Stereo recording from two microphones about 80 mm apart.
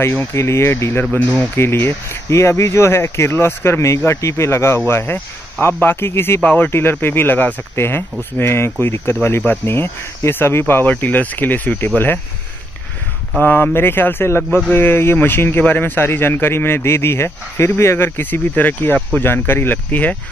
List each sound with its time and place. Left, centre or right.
0.0 s speech: left
1.1 s speech: left
13.4 s speech: left